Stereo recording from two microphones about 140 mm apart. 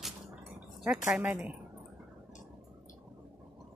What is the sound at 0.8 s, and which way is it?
Speech, 10° right (ahead or behind).